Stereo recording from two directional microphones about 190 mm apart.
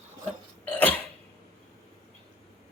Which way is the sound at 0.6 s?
10° left (ahead or behind).